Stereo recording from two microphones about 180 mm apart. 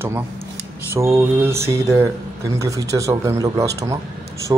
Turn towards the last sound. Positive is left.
turn(degrees=-20)  # may be behind; listen again after turning